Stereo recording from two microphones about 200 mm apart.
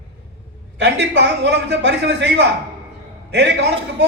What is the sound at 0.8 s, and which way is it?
Speech, 55° right (ahead or behind).